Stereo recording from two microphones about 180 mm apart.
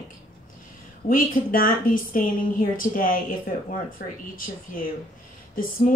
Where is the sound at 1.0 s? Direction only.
50° left (ahead or behind).